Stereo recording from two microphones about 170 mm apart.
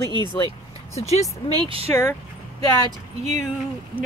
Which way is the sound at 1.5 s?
30° right (ahead or behind).